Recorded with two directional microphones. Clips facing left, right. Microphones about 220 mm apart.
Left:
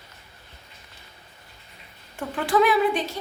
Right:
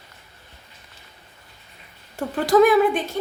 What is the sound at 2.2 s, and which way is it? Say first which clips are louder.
Speech: right 6 dB; 40° right (ahead or behind).